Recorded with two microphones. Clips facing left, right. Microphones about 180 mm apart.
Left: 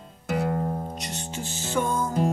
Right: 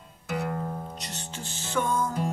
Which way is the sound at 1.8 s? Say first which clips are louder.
Left 2 dB; 25° left (ahead or behind).